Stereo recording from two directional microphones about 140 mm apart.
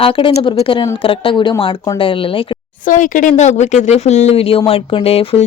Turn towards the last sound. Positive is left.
turn(degrees=45)  # may be behind; listen again after turning